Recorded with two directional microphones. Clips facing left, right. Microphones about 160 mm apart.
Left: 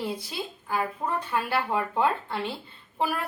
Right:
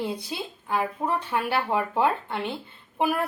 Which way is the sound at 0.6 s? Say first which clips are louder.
Right 3 dB; 20° right (ahead or behind).